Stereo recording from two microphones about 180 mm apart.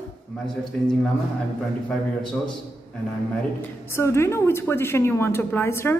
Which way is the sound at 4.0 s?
15° left (ahead or behind).